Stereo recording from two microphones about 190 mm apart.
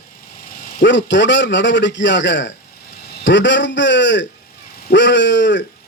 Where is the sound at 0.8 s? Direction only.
70° left (ahead or behind).